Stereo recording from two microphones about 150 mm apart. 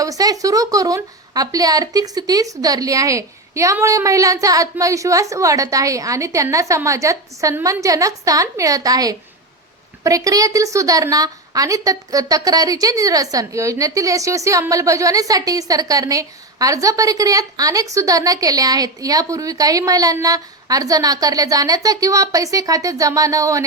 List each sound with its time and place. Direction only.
0.0 s a woman's voice: 25° right (ahead or behind)